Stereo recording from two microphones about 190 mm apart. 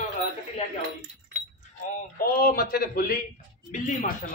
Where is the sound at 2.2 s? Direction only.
50° left (ahead or behind).